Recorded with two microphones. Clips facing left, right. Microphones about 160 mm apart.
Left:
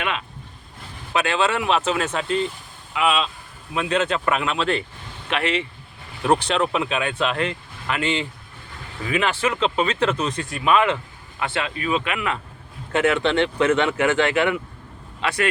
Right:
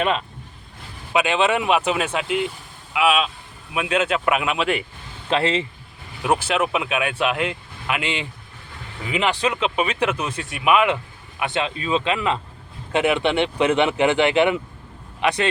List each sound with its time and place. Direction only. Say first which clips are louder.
1.1 s speech: right 2 dB; 15° right (ahead or behind)
5.3 s speech: right 3 dB; 30° right (ahead or behind)
6.2 s speech: left 1 dB; 5° right (ahead or behind)